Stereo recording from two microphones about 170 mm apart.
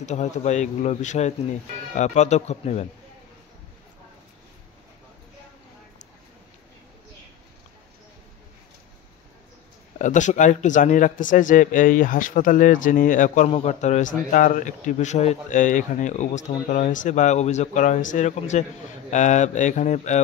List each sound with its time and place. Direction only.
0.0 s a man's voice: 45° left (ahead or behind)
9.9 s a man's voice: 45° left (ahead or behind)